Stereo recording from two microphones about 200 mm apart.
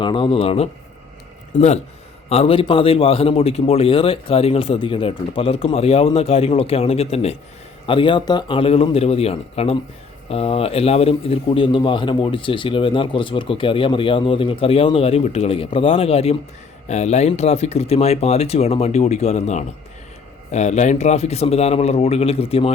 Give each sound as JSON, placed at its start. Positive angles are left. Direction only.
{"t": 0.0, "sound": "a man's voice", "side_deg": 25}